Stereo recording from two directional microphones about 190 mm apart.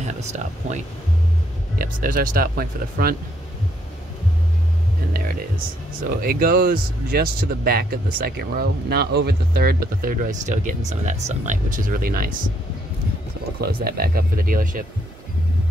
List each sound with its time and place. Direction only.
0.2 s speech: 35° right (ahead or behind)
6.0 s speech: 55° right (ahead or behind)
13.6 s speech: 55° right (ahead or behind)